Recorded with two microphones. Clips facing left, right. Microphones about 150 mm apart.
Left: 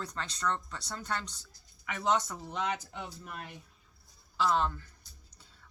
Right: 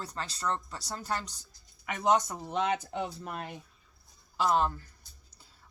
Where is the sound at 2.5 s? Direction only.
55° right (ahead or behind).